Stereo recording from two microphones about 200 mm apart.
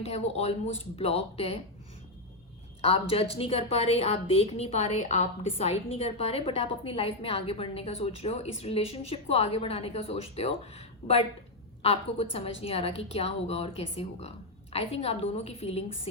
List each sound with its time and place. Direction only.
0.0 s a woman's voice: 30° left (ahead or behind)
2.8 s a woman's voice: 30° left (ahead or behind)